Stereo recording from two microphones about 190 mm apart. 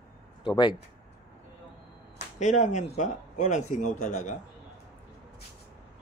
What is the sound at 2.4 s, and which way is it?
A man's voice, 40° left (ahead or behind).